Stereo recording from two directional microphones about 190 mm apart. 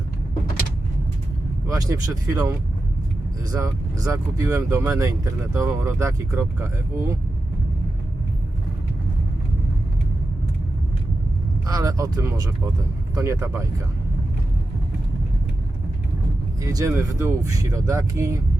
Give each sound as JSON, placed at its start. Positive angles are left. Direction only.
{"t": 1.6, "sound": "speech", "side_deg": -20}
{"t": 11.6, "sound": "speech", "side_deg": -20}
{"t": 16.6, "sound": "speech", "side_deg": -15}